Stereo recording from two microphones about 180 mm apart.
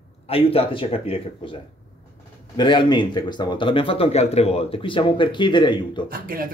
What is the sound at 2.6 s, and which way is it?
Speech, 25° left (ahead or behind).